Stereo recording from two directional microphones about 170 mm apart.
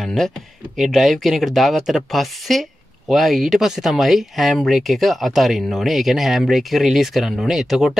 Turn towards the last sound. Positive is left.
turn(degrees=0)  # may be behind; listen again after turning